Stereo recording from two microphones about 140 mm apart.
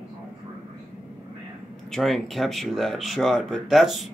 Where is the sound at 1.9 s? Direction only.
Centre (ahead or behind).